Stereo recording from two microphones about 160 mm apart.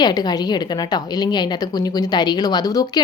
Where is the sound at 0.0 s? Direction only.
25° left (ahead or behind).